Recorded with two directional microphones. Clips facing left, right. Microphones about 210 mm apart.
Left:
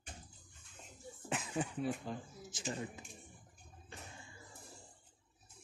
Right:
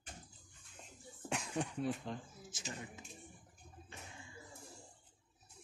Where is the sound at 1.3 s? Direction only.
Centre (ahead or behind).